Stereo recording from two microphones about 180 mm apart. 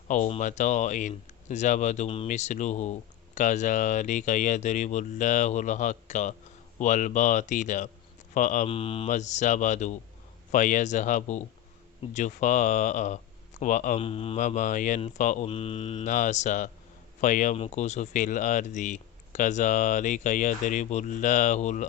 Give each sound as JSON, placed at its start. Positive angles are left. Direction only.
{"t": 0.1, "sound": "speech", "side_deg": 40}
{"t": 8.7, "sound": "speech", "side_deg": 30}
{"t": 9.0, "sound": "speech", "side_deg": 40}
{"t": 14.0, "sound": "speech", "side_deg": 30}
{"t": 14.4, "sound": "speech", "side_deg": 45}